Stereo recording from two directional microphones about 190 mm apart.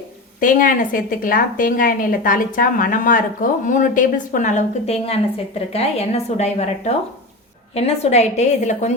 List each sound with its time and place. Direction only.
0.3 s a woman's voice: 45° left (ahead or behind)